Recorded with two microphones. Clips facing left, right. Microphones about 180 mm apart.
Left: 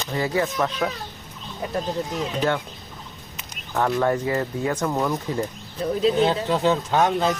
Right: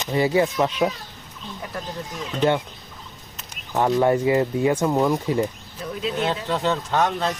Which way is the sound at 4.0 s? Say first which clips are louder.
Right 4 dB; 15° right (ahead or behind).